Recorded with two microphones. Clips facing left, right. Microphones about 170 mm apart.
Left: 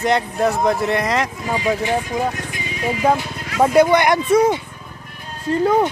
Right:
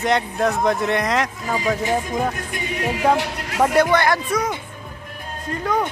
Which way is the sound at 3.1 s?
75° right (ahead or behind).